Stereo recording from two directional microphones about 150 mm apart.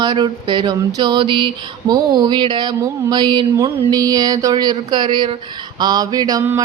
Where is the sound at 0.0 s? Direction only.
30° right (ahead or behind).